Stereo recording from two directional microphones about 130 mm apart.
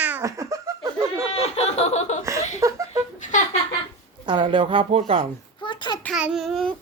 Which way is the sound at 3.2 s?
70° left (ahead or behind).